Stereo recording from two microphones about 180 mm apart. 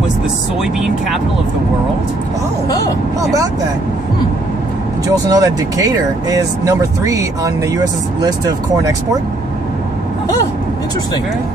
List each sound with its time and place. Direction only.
0.6 s speech: centre (ahead or behind)
5.3 s speech: 20° right (ahead or behind)